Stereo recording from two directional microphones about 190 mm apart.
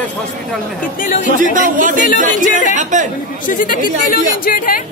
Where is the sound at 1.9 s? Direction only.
45° left (ahead or behind).